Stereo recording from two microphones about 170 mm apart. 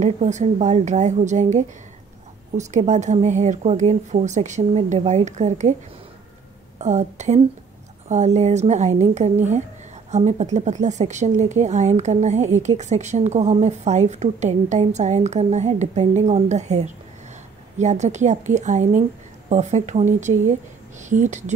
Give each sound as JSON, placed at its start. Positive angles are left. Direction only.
{"t": 0.0, "sound": "a woman's voice", "side_deg": -45}
{"t": 6.8, "sound": "a woman's voice", "side_deg": -40}